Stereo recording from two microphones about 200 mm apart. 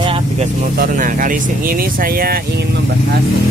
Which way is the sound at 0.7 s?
45° right (ahead or behind).